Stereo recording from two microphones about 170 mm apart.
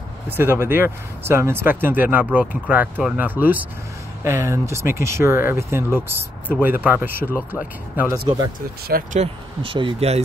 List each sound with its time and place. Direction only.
0.4 s speech: 15° right (ahead or behind)
8.8 s speech: 60° right (ahead or behind)
9.2 s speech: 30° right (ahead or behind)